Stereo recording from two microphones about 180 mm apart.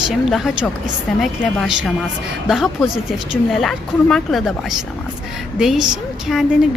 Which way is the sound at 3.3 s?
Centre (ahead or behind).